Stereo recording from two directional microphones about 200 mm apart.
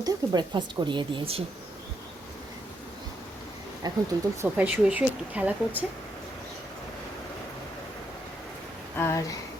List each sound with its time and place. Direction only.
0.0 s speech: 20° right (ahead or behind)
3.8 s speech: 20° right (ahead or behind)
4.4 s a woman's voice: 10° right (ahead or behind)
9.0 s speech: 10° left (ahead or behind)